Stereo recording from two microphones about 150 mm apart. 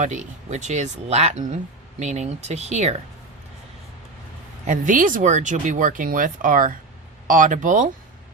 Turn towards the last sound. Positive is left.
turn(degrees=-60)  # may be behind; listen again after turning